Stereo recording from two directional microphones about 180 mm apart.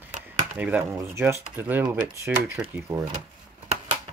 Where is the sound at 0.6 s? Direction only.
10° right (ahead or behind).